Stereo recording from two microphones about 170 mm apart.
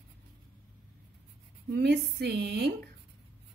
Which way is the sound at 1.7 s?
75° right (ahead or behind).